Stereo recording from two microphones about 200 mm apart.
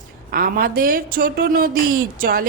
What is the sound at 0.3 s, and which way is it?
Speech, 45° right (ahead or behind).